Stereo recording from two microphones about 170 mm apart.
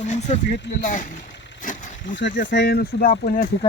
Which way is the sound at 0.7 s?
90° left.